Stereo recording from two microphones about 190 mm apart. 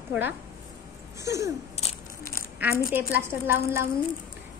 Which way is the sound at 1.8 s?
35° left (ahead or behind).